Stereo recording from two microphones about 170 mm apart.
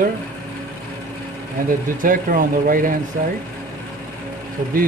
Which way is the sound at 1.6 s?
55° right (ahead or behind).